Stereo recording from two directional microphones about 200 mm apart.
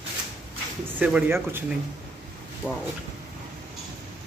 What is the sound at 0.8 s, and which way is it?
Speech, 10° right (ahead or behind).